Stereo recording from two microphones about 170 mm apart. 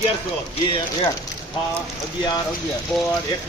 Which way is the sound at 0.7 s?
30° left (ahead or behind).